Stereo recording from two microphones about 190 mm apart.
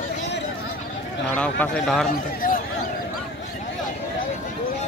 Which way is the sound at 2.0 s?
45° left (ahead or behind).